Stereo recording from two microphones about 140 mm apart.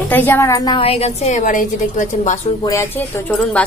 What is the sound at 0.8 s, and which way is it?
A woman's voice, 45° left (ahead or behind).